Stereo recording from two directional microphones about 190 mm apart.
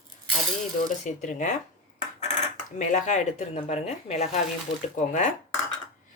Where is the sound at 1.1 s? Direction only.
40° left (ahead or behind).